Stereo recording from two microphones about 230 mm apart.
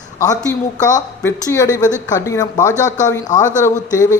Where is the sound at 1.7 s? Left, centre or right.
Centre.